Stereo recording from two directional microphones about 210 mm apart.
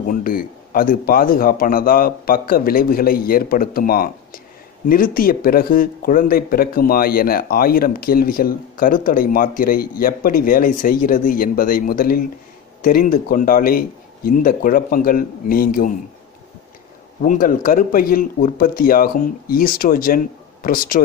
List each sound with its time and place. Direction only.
0.0 s speech: 40° left (ahead or behind)
17.2 s speech: 40° left (ahead or behind)